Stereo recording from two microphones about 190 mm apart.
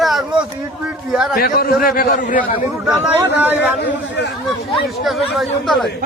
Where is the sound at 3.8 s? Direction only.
65° left (ahead or behind).